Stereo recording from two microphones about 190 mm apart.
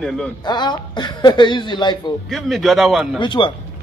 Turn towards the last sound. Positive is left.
turn(degrees=25)  # may be behind; listen again after turning